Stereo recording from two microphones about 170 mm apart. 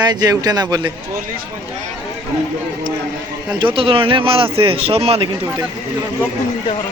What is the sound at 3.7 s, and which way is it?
Speech, 30° right (ahead or behind).